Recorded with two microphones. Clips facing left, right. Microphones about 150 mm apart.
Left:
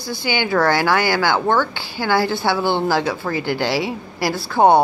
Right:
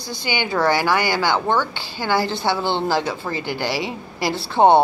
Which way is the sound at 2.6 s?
10° left (ahead or behind).